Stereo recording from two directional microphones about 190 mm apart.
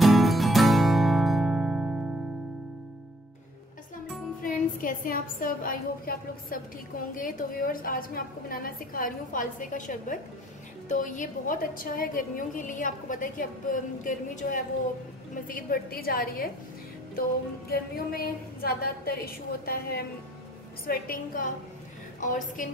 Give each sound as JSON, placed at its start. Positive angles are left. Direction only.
{"t": 0.0, "sound": "music", "side_deg": 0}
{"t": 4.4, "sound": "a woman's voice", "side_deg": 45}
{"t": 17.6, "sound": "a woman's voice", "side_deg": 55}